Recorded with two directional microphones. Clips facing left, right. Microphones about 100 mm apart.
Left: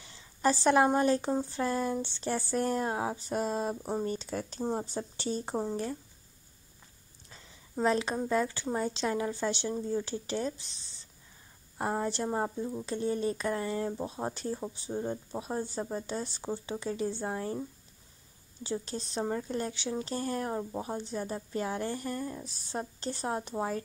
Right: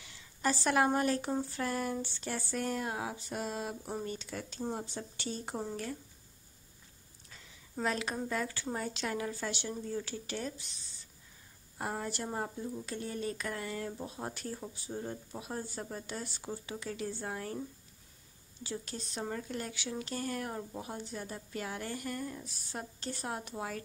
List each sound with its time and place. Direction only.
0.0 s speech: 30° left (ahead or behind)
7.2 s speech: 30° left (ahead or behind)